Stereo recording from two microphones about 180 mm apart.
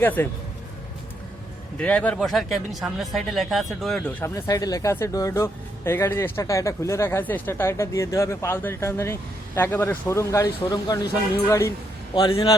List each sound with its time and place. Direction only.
0.0 s speech: 10° left (ahead or behind)
1.8 s speech: 5° left (ahead or behind)
4.2 s speech: 15° left (ahead or behind)
12.1 s a man's voice: 30° left (ahead or behind)